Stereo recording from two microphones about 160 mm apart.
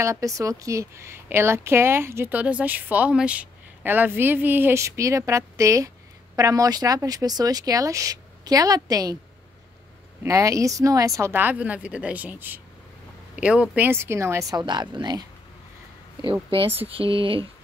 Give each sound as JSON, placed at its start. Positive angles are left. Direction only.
{"t": 0.0, "sound": "a woman's voice", "side_deg": -20}
{"t": 10.2, "sound": "a woman's voice", "side_deg": -20}
{"t": 16.4, "sound": "speech", "side_deg": -35}